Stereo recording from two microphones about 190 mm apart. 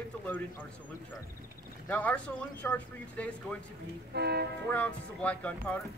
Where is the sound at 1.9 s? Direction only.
10° left (ahead or behind).